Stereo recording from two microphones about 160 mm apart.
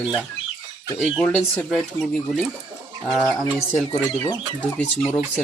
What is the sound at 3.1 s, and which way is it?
Speech, 20° right (ahead or behind).